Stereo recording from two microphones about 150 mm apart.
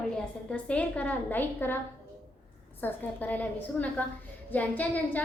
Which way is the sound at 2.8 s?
10° left (ahead or behind).